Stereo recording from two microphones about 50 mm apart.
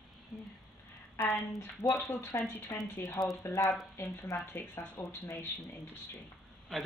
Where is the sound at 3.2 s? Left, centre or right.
Left.